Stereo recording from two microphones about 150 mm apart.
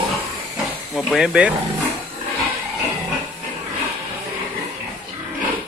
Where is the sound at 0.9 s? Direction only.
Centre (ahead or behind).